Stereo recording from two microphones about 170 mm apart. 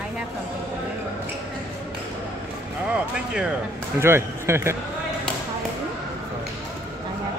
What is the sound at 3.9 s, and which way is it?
Speech, 15° right (ahead or behind).